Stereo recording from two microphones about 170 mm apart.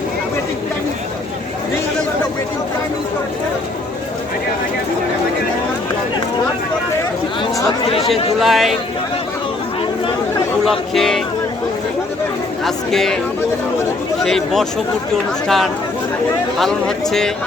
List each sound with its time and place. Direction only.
8.4 s speech: centre (ahead or behind)
10.7 s speech: centre (ahead or behind)
12.6 s speech: centre (ahead or behind)
14.3 s speech: centre (ahead or behind)